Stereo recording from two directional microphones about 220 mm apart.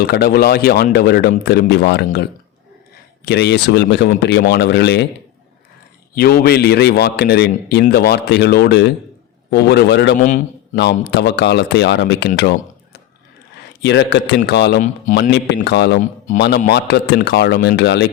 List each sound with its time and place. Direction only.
0.0 s a man's voice: 45° left (ahead or behind)
3.2 s a man's voice: 50° left (ahead or behind)
6.1 s a man's voice: 45° left (ahead or behind)
12.4 s a sound: 50° left (ahead or behind)
13.8 s a man's voice: 50° left (ahead or behind)
16.0 s speech: 35° left (ahead or behind)
16.4 s a man's voice: 50° left (ahead or behind)